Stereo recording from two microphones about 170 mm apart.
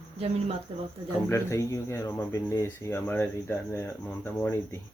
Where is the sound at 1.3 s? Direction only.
15° left (ahead or behind).